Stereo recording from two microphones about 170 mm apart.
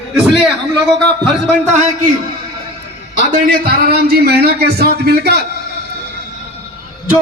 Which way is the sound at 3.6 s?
65° right (ahead or behind).